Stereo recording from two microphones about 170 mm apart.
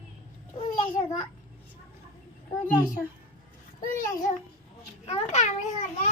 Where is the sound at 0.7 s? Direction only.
45° left (ahead or behind).